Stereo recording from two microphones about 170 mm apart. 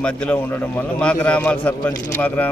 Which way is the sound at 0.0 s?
5° left (ahead or behind).